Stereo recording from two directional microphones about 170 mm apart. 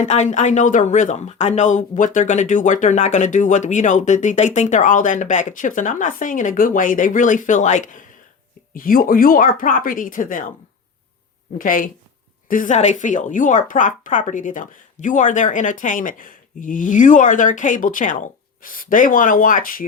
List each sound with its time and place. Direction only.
0.0 s speech: 45° left (ahead or behind)
11.5 s speech: 55° left (ahead or behind)